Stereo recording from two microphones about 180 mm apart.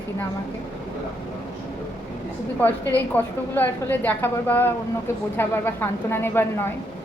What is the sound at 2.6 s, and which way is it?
A woman's voice, 10° left (ahead or behind).